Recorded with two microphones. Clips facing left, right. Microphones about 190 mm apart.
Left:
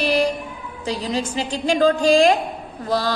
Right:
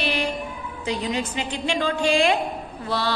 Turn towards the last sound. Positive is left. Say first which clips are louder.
# left 4 dB
turn(degrees=40)  # may be behind; listen again after turning